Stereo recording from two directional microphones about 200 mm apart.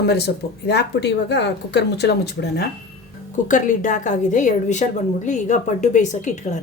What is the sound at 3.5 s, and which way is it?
A woman's voice, 40° left (ahead or behind).